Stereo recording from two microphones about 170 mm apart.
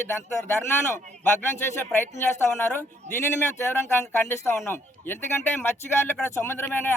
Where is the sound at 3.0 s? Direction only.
45° right (ahead or behind).